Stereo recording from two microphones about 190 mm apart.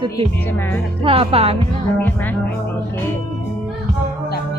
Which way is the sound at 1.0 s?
30° right (ahead or behind).